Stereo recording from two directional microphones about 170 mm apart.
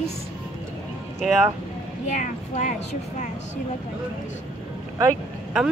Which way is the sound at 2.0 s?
45° left (ahead or behind).